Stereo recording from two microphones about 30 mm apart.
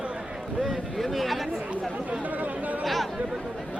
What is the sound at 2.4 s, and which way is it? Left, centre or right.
Chatter, right.